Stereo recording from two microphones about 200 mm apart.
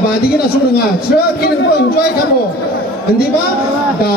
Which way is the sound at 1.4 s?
50° left (ahead or behind).